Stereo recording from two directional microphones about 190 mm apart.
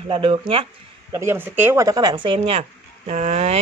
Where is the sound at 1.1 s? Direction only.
10° right (ahead or behind); by 3.5 s 35° right (ahead or behind).